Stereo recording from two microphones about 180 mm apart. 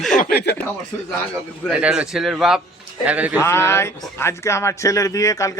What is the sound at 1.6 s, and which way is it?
A man's voice, 5° right (ahead or behind).